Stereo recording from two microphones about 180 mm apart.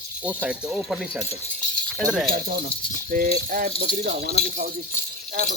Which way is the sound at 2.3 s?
50° right (ahead or behind).